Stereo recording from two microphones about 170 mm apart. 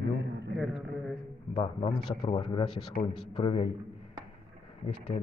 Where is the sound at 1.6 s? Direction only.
35° left (ahead or behind).